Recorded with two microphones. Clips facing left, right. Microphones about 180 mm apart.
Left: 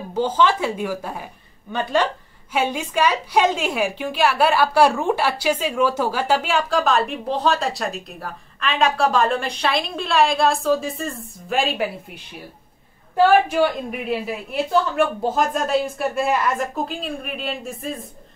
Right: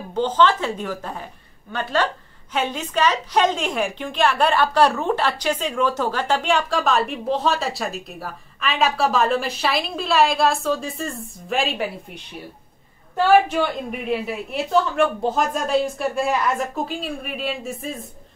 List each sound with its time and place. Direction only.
0.1 s a woman's voice: 10° left (ahead or behind)